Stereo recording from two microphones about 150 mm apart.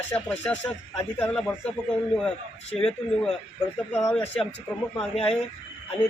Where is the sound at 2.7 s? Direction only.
40° left (ahead or behind).